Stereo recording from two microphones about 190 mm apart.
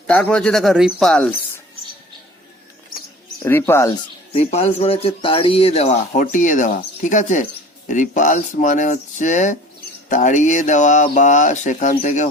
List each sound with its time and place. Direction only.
0.1 s speech: 5° left (ahead or behind)
3.4 s speech: 15° left (ahead or behind)
4.3 s speech: 35° left (ahead or behind)